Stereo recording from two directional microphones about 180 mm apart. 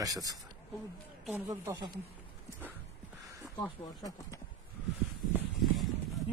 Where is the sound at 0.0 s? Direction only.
20° right (ahead or behind).